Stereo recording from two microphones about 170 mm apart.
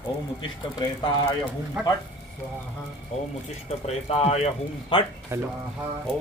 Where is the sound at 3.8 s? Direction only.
35° left (ahead or behind).